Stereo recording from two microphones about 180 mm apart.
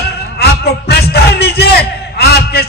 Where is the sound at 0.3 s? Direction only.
60° left (ahead or behind).